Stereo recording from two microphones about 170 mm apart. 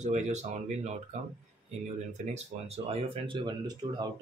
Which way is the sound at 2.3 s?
40° right (ahead or behind).